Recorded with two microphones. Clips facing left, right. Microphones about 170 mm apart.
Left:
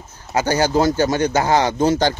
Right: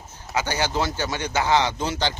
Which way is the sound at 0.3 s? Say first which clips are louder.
Left 8 dB; 40° left (ahead or behind).